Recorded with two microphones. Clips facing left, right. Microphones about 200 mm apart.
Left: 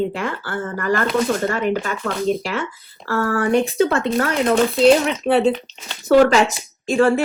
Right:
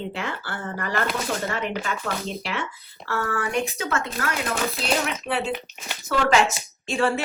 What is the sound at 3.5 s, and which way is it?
Speech, 30° left (ahead or behind).